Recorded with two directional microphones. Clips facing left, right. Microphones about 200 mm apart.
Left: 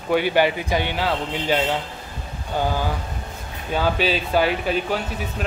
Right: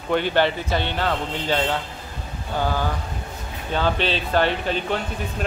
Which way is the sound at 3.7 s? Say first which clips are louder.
Left 1 dB; 10° left (ahead or behind).